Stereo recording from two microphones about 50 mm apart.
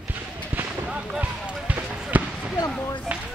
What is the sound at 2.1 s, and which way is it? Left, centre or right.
Basketball bounce, right.